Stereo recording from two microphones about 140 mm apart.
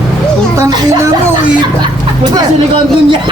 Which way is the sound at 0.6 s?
30° right (ahead or behind).